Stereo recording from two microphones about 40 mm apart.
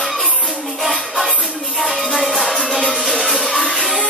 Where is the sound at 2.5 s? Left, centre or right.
Centre.